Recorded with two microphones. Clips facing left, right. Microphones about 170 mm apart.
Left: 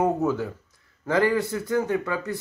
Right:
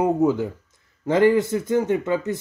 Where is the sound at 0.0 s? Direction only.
15° right (ahead or behind).